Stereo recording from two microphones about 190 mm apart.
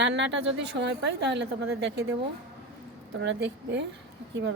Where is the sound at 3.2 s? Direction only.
70° right (ahead or behind).